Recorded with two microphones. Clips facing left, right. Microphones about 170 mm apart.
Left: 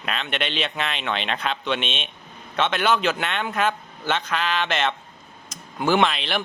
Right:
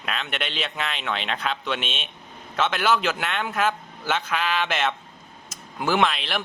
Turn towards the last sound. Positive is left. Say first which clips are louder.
# left 2 dB
turn(degrees=0)  # may be behind; listen again after turning